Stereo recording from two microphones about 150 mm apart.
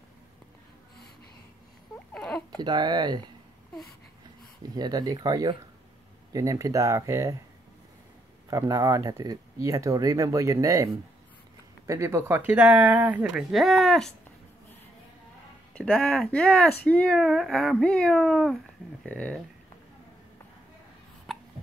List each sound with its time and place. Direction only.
2.1 s a sound: 5° left (ahead or behind)
2.6 s speech: 30° right (ahead or behind)
4.7 s speech: 25° right (ahead or behind)
8.5 s speech: 25° right (ahead or behind); by 14.1 s 5° left (ahead or behind)
15.7 s speech: 5° left (ahead or behind)
21.3 s hiccup: centre (ahead or behind)